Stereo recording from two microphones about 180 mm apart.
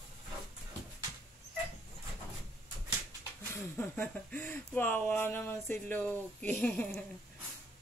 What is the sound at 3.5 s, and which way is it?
Speech, 10° left (ahead or behind).